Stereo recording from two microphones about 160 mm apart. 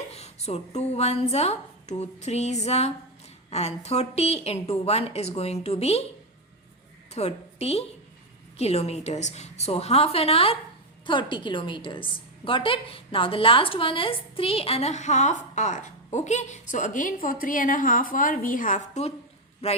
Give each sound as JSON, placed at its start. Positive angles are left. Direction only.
{"t": 0.1, "sound": "a woman's voice", "side_deg": 40}
{"t": 7.1, "sound": "a woman's voice", "side_deg": 40}